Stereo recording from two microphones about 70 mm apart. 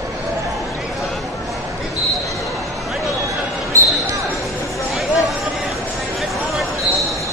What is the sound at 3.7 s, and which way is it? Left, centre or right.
Basketball bounce, right.